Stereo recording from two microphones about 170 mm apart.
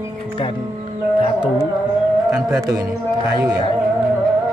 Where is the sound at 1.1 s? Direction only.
30° left (ahead or behind).